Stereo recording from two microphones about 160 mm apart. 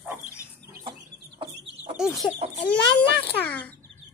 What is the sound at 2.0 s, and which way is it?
Chicken, centre (ahead or behind).